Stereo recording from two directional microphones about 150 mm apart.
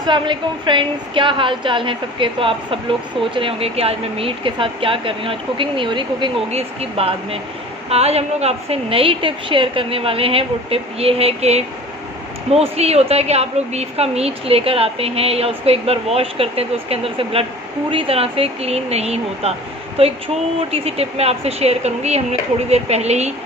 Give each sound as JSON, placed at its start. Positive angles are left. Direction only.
{"t": 0.0, "sound": "a woman's voice", "side_deg": -30}
{"t": 12.7, "sound": "a woman's voice", "side_deg": -45}
{"t": 20.7, "sound": "a woman's voice", "side_deg": -40}